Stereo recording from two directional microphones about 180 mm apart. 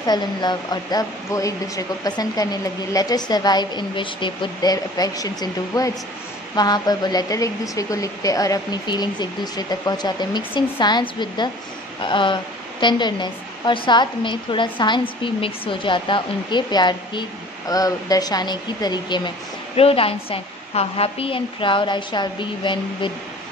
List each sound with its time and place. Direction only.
0.0 s speech: 25° left (ahead or behind)